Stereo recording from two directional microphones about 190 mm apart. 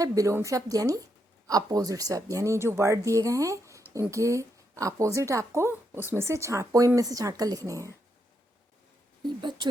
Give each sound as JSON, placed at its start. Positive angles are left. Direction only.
{"t": 0.0, "sound": "a woman's voice", "side_deg": -15}
{"t": 9.2, "sound": "speech", "side_deg": -25}